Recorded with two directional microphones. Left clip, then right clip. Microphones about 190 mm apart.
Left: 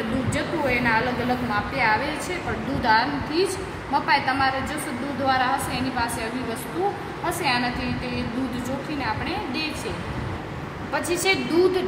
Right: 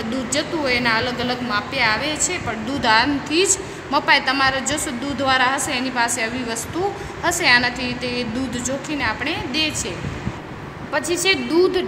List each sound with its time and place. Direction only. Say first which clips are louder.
0.7 s a woman's voice: right 2 dB; 45° right (ahead or behind)
7.4 s a woman's voice: right 8 dB; 45° right (ahead or behind)
10.9 s a woman's voice: right 4 dB; 55° right (ahead or behind)